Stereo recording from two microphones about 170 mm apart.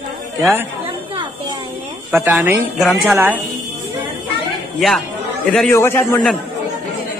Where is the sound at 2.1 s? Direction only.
10° right (ahead or behind).